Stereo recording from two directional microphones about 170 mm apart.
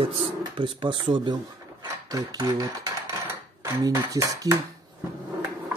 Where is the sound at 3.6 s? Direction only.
20° right (ahead or behind).